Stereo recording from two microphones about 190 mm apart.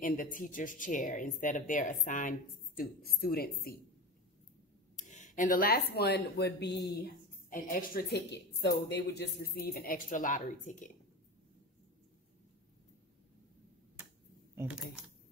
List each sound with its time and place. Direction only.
0.0 s speech: 45° left (ahead or behind)
4.9 s speech: 40° left (ahead or behind)
14.5 s speech: 10° right (ahead or behind)